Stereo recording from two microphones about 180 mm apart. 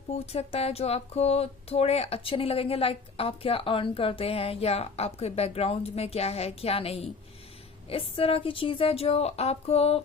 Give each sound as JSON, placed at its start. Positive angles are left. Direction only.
{"t": 0.3, "sound": "speech", "side_deg": 35}